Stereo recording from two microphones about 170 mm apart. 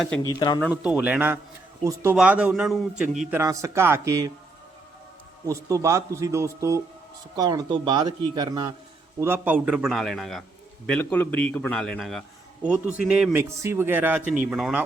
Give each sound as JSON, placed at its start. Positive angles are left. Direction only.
{"t": 0.2, "sound": "speech", "side_deg": 25}
{"t": 0.7, "sound": "a man's voice", "side_deg": -5}
{"t": 3.3, "sound": "a man's voice", "side_deg": -20}
{"t": 5.5, "sound": "a man's voice", "side_deg": -20}
{"t": 9.2, "sound": "a man's voice", "side_deg": -10}